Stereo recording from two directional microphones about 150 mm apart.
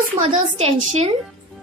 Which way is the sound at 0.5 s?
45° right (ahead or behind).